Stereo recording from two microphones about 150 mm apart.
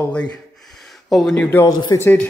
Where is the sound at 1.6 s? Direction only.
25° left (ahead or behind).